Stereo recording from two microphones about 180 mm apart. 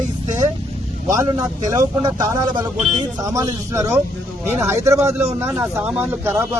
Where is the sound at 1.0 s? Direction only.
20° right (ahead or behind).